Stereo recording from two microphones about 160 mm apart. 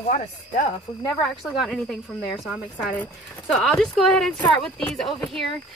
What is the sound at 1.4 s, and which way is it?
A woman's voice, centre (ahead or behind).